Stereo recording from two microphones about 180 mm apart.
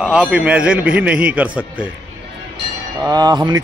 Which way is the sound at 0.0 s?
5° right (ahead or behind).